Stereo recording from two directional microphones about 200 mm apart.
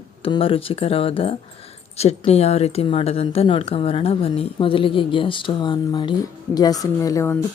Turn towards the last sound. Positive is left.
turn(degrees=15)  # may be behind; listen again after turning